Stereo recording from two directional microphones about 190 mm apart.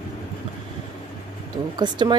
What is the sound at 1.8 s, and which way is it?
Speech, 20° right (ahead or behind).